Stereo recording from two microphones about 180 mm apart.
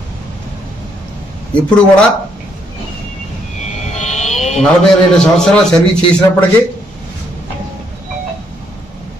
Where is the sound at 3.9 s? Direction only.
40° left (ahead or behind).